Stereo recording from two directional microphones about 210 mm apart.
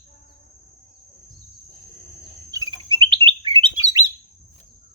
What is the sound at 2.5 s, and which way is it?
Bird, 20° right (ahead or behind).